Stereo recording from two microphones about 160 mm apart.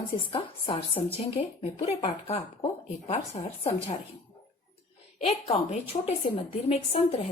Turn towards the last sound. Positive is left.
turn(degrees=40)  # may be behind; listen again after turning